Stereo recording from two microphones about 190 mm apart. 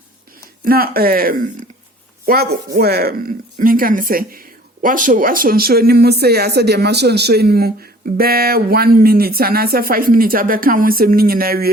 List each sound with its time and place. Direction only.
0.6 s speech: 50° right (ahead or behind)